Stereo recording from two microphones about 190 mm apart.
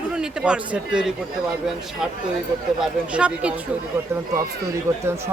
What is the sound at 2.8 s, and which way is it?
Speech, 5° right (ahead or behind).